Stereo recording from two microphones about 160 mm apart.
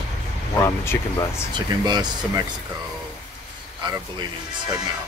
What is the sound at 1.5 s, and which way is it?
Speech, 25° right (ahead or behind).